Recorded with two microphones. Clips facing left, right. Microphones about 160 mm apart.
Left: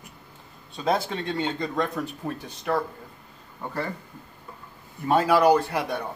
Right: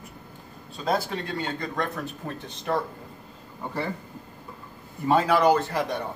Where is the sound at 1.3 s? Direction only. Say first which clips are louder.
Left 3 dB; 20° left (ahead or behind).